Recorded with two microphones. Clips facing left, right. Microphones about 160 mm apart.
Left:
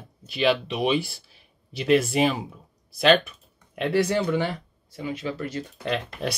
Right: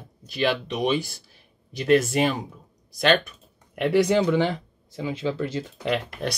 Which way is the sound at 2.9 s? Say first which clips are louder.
Left 2 dB; 5° left (ahead or behind).